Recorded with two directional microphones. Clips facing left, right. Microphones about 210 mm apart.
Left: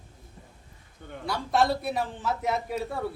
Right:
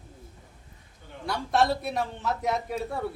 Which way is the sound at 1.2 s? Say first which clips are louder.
Even; centre (ahead or behind).